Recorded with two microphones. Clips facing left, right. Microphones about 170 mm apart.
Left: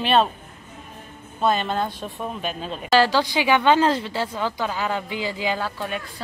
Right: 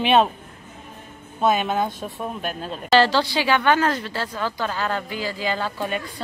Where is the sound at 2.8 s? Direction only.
5° left (ahead or behind).